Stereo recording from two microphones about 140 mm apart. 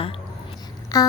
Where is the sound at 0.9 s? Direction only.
25° left (ahead or behind).